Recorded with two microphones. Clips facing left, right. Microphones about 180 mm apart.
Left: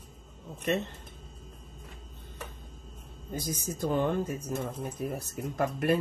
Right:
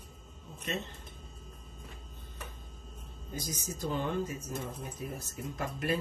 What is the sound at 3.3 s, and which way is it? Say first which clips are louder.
Speech: left 5 dB; 55° left (ahead or behind).